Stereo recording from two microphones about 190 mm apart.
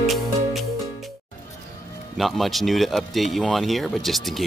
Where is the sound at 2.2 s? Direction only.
Centre (ahead or behind).